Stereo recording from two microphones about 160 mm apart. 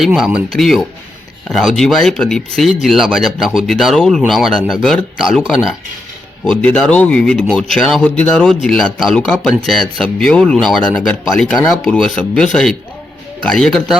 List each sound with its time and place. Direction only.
0.0 s speech: 5° right (ahead or behind)
6.4 s speech: 5° left (ahead or behind)